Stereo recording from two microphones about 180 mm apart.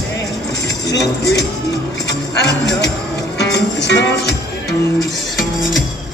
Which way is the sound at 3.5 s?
70° left (ahead or behind).